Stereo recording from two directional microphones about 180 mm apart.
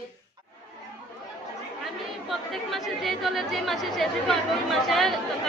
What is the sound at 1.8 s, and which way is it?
Speech, centre (ahead or behind).